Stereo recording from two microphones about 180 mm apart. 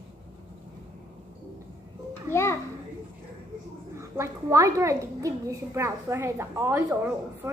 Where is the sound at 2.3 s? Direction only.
15° left (ahead or behind).